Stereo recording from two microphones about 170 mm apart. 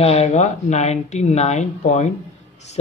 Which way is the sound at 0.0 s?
40° left (ahead or behind).